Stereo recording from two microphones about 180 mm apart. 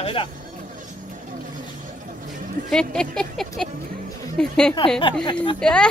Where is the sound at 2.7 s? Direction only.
5° left (ahead or behind).